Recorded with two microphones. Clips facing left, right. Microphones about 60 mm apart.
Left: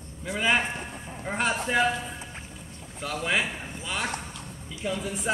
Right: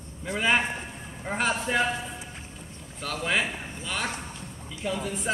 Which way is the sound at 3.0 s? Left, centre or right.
Centre.